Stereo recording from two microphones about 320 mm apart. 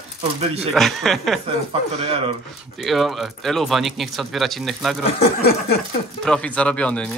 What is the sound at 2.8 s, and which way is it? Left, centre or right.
Speech, centre.